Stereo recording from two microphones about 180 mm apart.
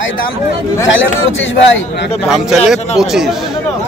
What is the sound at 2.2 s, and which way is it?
Speech, centre (ahead or behind).